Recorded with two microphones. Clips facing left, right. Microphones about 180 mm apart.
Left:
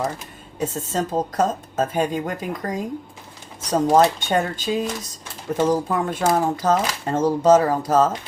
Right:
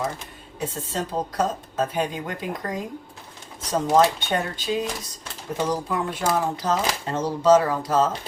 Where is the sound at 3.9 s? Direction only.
45° left (ahead or behind).